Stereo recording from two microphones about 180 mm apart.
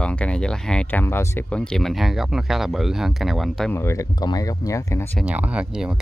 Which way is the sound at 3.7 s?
15° left (ahead or behind).